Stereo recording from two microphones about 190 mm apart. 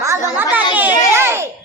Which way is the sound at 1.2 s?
15° right (ahead or behind).